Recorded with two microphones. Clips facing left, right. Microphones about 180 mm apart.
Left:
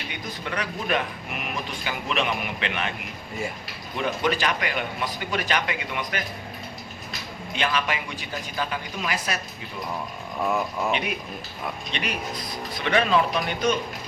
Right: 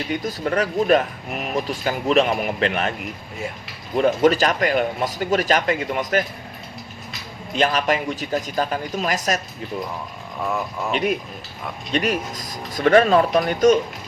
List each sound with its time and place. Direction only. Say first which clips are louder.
0.1 s speech: right 10 dB; 40° right (ahead or behind)
3.9 s speech: right 9 dB; 40° right (ahead or behind)
7.5 s speech: right 7 dB; 40° right (ahead or behind)
10.4 s speech: even; centre (ahead or behind)
11.9 s speech: right 11 dB; 45° right (ahead or behind)